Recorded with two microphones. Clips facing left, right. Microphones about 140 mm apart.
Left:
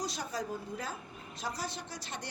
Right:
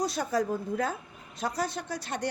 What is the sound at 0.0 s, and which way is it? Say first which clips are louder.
A woman's voice: right 9 dB; 55° right (ahead or behind).